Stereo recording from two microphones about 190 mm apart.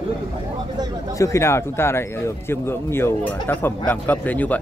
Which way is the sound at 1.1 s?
15° left (ahead or behind).